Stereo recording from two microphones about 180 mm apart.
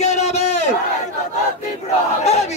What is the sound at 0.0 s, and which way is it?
Crowd, 40° left (ahead or behind).